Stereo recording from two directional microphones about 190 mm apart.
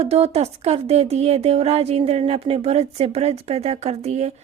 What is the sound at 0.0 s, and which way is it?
Speech, 35° right (ahead or behind).